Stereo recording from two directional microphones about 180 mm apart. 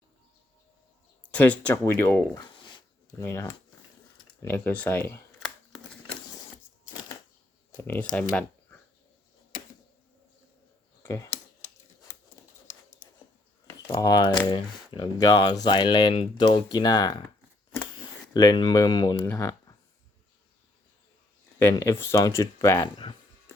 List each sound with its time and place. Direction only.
1.3 s speech: 10° left (ahead or behind)
2.4 s dog: 25° left (ahead or behind)
3.2 s speech: 15° left (ahead or behind)
7.8 s speech: 15° left (ahead or behind)
11.0 s computer keyboard: 15° left (ahead or behind)
13.8 s speech: 20° left (ahead or behind)
18.3 s speech: 25° left (ahead or behind)
21.6 s speech: 15° left (ahead or behind)